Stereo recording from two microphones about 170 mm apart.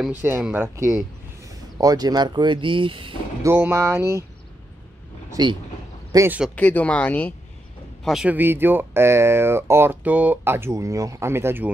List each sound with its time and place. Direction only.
0.0 s speech: 10° right (ahead or behind); by 3.2 s 30° right (ahead or behind)
3.4 s speech: 15° right (ahead or behind)
5.3 s speech: 25° right (ahead or behind)
6.1 s speech: 15° right (ahead or behind)
6.5 s speech: 10° left (ahead or behind)
8.0 s speech: 5° right (ahead or behind)